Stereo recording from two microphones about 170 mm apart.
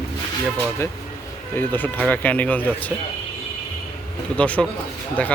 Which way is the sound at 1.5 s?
10° left (ahead or behind).